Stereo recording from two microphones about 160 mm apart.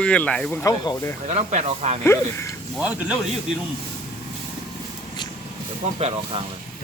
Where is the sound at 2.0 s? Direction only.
15° left (ahead or behind).